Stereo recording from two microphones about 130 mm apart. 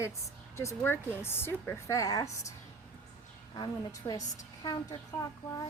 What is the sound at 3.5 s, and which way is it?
Speech, 30° left (ahead or behind).